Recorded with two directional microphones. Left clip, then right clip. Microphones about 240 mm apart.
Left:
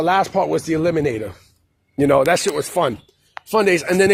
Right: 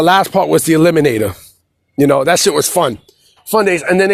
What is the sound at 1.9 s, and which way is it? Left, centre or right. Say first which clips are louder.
Speech: right 4 dB; right.